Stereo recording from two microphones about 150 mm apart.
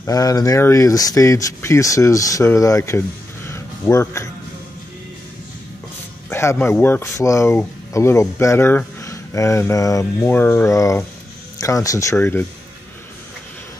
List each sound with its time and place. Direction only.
0.0 s speech: 25° left (ahead or behind)
3.4 s a sound: 20° left (ahead or behind)
6.3 s speech: 15° left (ahead or behind)